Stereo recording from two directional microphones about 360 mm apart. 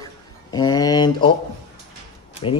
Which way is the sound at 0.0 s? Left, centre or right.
Centre.